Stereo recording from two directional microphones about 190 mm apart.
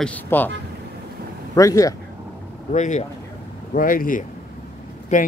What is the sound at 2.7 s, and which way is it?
Speech, 40° left (ahead or behind).